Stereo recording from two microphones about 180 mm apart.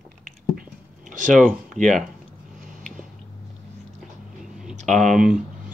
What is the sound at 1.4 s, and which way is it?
Speech, centre (ahead or behind).